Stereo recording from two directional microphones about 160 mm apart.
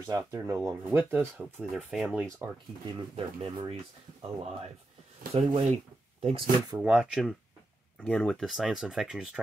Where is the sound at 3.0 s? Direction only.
35° right (ahead or behind).